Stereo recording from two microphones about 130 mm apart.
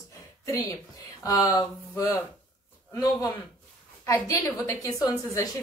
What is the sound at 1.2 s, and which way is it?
A woman's voice, 25° left (ahead or behind).